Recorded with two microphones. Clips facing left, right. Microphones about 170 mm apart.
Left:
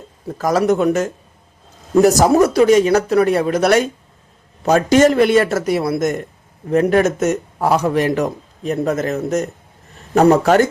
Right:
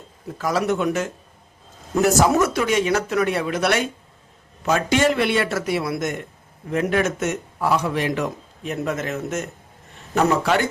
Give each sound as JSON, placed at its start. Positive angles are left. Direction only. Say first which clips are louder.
{"t": 0.3, "sound": "a man's voice", "louder": "left 6 dB", "side_deg": 40}